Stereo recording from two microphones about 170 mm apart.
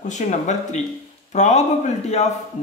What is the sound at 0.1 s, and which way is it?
Speech, 45° left (ahead or behind).